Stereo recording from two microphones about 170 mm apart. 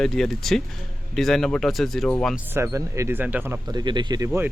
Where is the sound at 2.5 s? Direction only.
15° right (ahead or behind).